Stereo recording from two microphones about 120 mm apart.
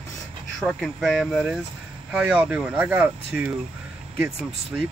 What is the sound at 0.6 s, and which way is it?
Speech, 5° left (ahead or behind).